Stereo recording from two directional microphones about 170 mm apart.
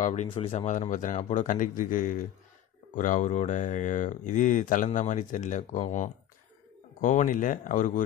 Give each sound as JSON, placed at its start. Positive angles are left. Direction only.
{"t": 0.0, "sound": "speech", "side_deg": 45}